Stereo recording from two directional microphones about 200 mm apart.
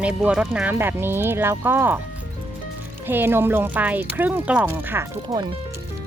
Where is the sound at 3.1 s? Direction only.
10° right (ahead or behind).